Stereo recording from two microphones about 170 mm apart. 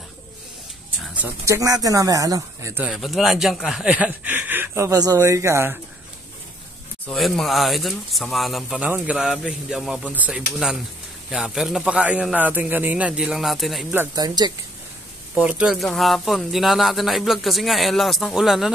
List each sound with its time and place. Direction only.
1.1 s speech: 15° right (ahead or behind)
2.8 s a man's voice: centre (ahead or behind)
7.1 s speech: centre (ahead or behind)
14.1 s speech: 25° right (ahead or behind)
15.3 s speech: 10° right (ahead or behind)